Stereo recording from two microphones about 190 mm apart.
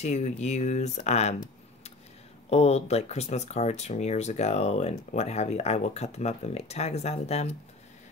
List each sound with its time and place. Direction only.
0.0 s speech: 35° left (ahead or behind)
2.5 s speech: 35° left (ahead or behind)